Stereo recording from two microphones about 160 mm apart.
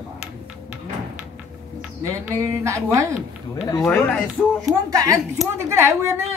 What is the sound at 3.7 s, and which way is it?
Speech, 15° left (ahead or behind).